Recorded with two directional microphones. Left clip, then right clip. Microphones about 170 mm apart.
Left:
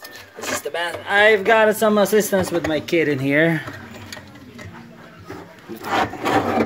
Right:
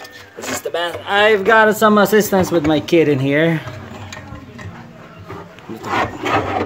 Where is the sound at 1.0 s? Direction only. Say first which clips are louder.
Right 1 dB; 40° right (ahead or behind).